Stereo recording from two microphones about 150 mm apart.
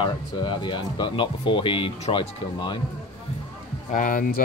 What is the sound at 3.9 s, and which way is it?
Speech, 65° left (ahead or behind).